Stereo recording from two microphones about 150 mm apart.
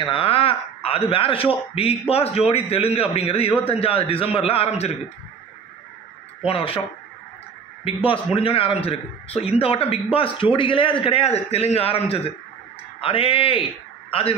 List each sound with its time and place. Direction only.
0.0 s a man's voice: 35° left (ahead or behind)
6.4 s a man's voice: 40° left (ahead or behind)
7.8 s a man's voice: 40° left (ahead or behind)